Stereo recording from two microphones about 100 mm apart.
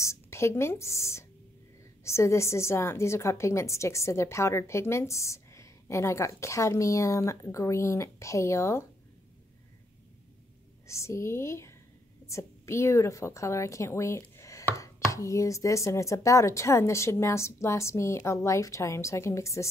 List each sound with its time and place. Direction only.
0.0 s a woman's voice: 25° left (ahead or behind)
10.9 s a woman's voice: 30° left (ahead or behind)
14.3 s chopping: 30° left (ahead or behind)
15.0 s a woman's voice: 30° left (ahead or behind)